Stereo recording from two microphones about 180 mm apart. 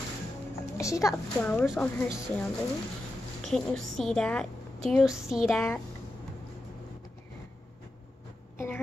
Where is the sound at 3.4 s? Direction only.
Centre (ahead or behind).